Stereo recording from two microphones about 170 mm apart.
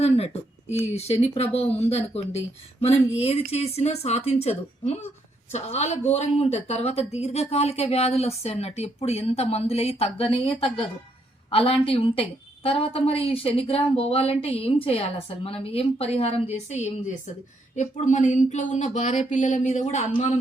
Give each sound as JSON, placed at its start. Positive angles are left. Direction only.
{"t": 0.9, "sound": "a woman's voice", "side_deg": 40}